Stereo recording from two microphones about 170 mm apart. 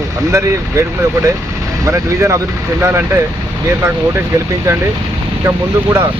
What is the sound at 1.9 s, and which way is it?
Speech, 15° right (ahead or behind).